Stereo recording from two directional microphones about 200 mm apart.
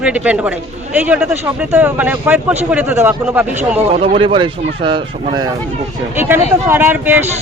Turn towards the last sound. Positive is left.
turn(degrees=-10)  # may be behind; listen again after turning